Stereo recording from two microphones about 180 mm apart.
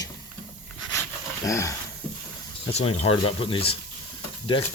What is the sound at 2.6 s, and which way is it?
Speech, 30° left (ahead or behind).